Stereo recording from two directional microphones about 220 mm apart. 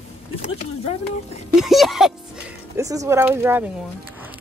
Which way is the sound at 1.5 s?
Centre (ahead or behind).